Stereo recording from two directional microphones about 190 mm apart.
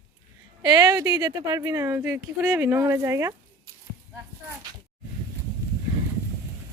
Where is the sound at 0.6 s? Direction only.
20° right (ahead or behind).